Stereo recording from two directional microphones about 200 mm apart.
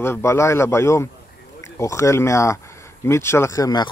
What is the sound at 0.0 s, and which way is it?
Speech, 15° left (ahead or behind).